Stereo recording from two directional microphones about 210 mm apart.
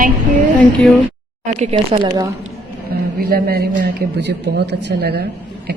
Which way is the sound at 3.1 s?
45° right (ahead or behind).